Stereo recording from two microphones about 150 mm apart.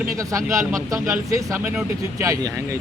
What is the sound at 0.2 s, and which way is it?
Speech, 20° right (ahead or behind).